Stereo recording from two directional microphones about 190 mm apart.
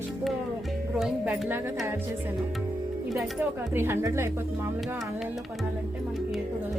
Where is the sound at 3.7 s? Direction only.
10° right (ahead or behind).